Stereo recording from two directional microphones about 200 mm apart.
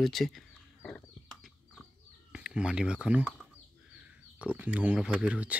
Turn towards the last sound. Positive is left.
turn(degrees=-5)  # may be behind; listen again after turning